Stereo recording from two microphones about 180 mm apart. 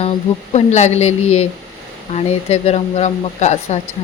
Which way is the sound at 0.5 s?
40° left (ahead or behind).